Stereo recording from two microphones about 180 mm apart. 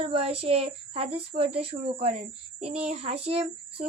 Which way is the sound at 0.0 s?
35° right (ahead or behind).